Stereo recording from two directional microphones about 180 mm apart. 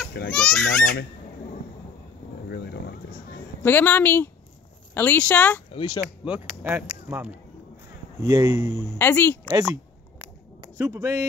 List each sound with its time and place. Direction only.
0.3 s a child's voice: 5° left (ahead or behind)
2.5 s a sound: 65° left (ahead or behind)
3.6 s speech: 10° left (ahead or behind)
5.7 s speech: 30° left (ahead or behind)
6.2 s speech: 10° right (ahead or behind)
8.2 s a man's voice: 20° right (ahead or behind)
8.9 s speech: 10° left (ahead or behind)
9.5 s a sound: 10° right (ahead or behind)
10.8 s speech: 15° right (ahead or behind)